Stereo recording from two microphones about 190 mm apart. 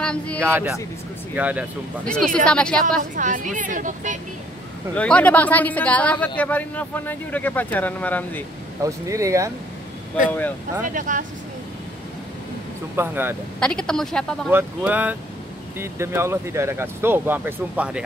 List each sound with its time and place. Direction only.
0.0 s speech: 5° left (ahead or behind)
0.4 s speech: 10° right (ahead or behind)
2.0 s speech: 5° left (ahead or behind)
3.2 s speech: 40° right (ahead or behind)
4.9 s speech: 5° left (ahead or behind)
8.8 s speech: 15° right (ahead or behind)
10.9 s speech: 45° right (ahead or behind)
12.9 s speech: 10° right (ahead or behind)
13.6 s speech: 5° left (ahead or behind)
14.5 s speech: 10° right (ahead or behind)